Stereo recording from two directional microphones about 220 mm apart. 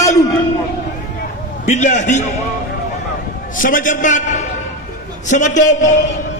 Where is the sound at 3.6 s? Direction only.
35° left (ahead or behind).